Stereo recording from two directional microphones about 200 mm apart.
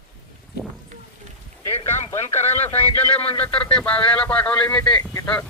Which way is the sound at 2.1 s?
10° left (ahead or behind).